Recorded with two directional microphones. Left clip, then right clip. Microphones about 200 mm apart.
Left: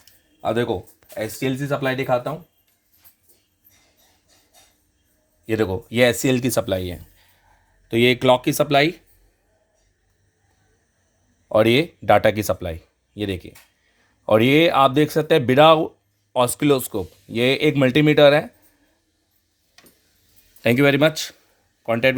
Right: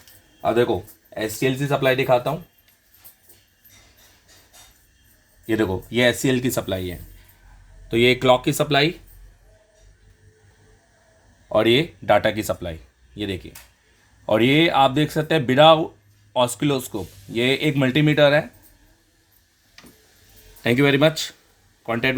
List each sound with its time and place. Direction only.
0.4 s speech: 35° left (ahead or behind)
5.5 s speech: 35° left (ahead or behind)
11.4 s speech: 50° left (ahead or behind)
20.6 s speech: 50° left (ahead or behind)